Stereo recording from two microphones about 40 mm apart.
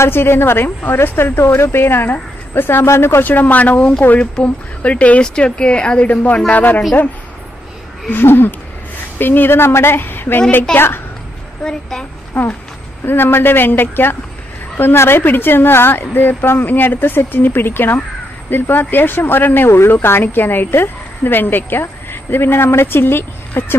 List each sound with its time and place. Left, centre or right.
0.1 s speech: left
3.3 s a man's voice: left
4.2 s speech: left
5.2 s speech: left
8.1 s speech: left
12.4 s speech: left
13.0 s speech: left